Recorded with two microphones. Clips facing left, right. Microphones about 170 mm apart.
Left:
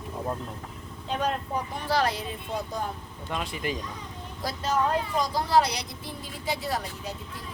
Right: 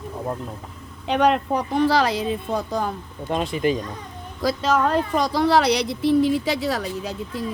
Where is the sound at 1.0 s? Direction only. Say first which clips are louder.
Right 10 dB; 80° right.